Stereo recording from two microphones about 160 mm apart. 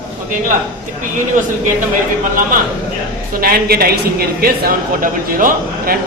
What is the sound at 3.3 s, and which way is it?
A woman's voice, 70° right (ahead or behind).